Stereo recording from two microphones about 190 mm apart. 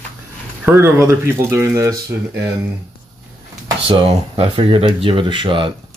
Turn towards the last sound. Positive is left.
turn(degrees=-25)  # may be behind; listen again after turning